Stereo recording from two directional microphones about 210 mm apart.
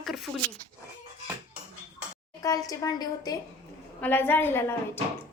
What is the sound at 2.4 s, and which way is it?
A woman's voice, 15° left (ahead or behind).